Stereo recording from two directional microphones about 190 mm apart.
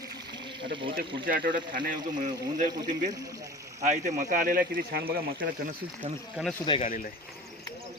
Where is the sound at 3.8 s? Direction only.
40° right (ahead or behind).